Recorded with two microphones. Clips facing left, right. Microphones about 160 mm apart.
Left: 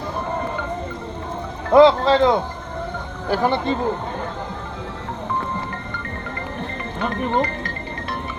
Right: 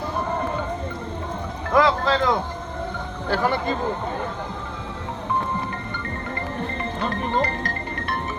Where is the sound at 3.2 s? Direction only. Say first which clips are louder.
Left 3 dB; 15° left (ahead or behind).